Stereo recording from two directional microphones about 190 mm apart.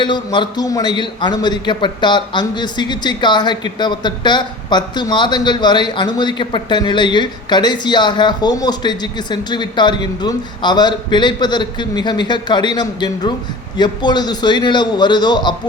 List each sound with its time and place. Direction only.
0.0 s a man's voice: 25° left (ahead or behind)